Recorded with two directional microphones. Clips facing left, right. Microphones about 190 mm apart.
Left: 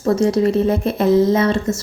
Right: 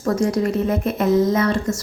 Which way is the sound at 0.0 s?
25° left (ahead or behind).